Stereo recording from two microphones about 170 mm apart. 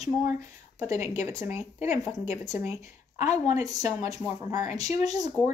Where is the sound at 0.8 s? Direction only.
15° right (ahead or behind).